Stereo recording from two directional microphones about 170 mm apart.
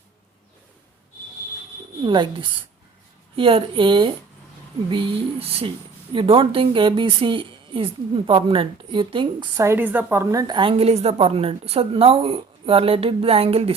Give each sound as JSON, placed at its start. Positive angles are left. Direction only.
{"t": 2.0, "sound": "a woman's voice", "side_deg": -30}
{"t": 9.6, "sound": "a woman's voice", "side_deg": -10}